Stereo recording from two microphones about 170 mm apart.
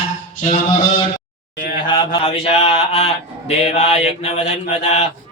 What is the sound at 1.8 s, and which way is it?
Speech, 30° left (ahead or behind).